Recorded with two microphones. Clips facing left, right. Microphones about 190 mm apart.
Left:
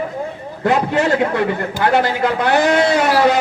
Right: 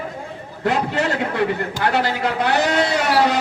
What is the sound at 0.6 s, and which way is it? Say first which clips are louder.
Speech: left 4 dB; 50° left (ahead or behind).